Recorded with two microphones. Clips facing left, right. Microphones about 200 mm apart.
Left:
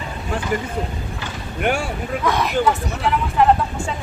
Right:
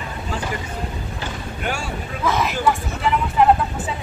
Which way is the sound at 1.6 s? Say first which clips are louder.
Left 7 dB; 55° left (ahead or behind).